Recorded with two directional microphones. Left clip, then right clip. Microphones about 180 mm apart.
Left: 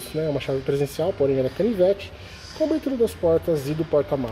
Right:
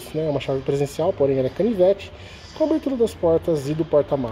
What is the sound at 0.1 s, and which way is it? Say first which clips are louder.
Speech: right 2 dB; 10° right (ahead or behind).